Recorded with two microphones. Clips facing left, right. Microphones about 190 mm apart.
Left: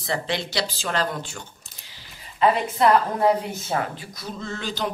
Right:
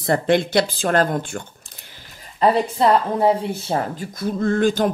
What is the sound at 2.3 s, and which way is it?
A woman's voice, 35° right (ahead or behind).